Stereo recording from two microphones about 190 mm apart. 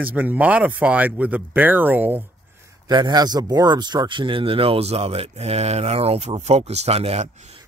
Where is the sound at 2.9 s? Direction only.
20° right (ahead or behind).